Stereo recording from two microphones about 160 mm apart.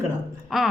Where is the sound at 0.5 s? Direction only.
Centre (ahead or behind).